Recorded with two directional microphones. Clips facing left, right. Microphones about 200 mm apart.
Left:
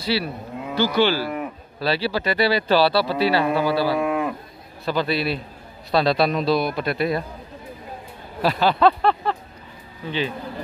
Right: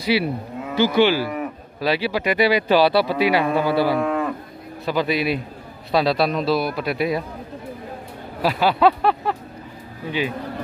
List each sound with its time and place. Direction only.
0.0 s cattle: 15° right (ahead or behind)
0.7 s speech: 15° right (ahead or behind)
3.5 s carnatic music: 20° right (ahead or behind)
4.0 s cattle: 10° left (ahead or behind)
4.8 s a man's voice: 15° right (ahead or behind)
8.4 s speech: 10° right (ahead or behind)